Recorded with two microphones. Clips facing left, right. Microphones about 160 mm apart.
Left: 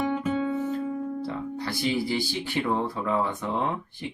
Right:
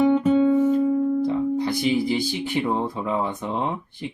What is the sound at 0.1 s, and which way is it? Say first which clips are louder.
Guitar: right 9 dB; 30° right (ahead or behind).